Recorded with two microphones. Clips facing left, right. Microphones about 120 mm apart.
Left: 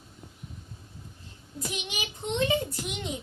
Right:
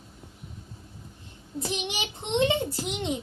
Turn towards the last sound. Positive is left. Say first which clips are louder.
# right 5 dB
turn(degrees=-30)  # may be behind; listen again after turning